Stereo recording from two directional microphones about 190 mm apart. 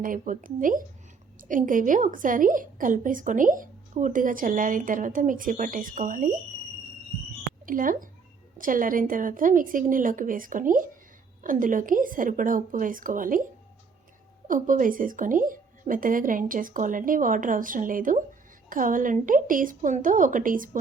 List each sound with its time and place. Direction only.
0.0 s a woman's voice: 45° right (ahead or behind)
7.6 s a woman's voice: 45° right (ahead or behind)
14.4 s a woman's voice: 45° right (ahead or behind)